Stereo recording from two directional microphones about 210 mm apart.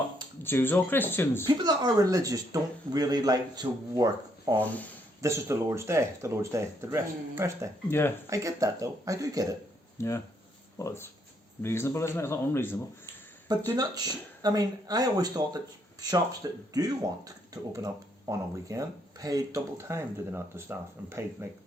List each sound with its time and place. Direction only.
0.4 s speech: 10° left (ahead or behind)
1.5 s speech: 20° right (ahead or behind)
4.6 s speech: 5° left (ahead or behind)
5.2 s speech: 15° right (ahead or behind)
7.9 s speech: 10° left (ahead or behind)
8.3 s speech: 15° right (ahead or behind)
10.0 s speech: 15° left (ahead or behind)
13.7 s speech: 20° right (ahead or behind)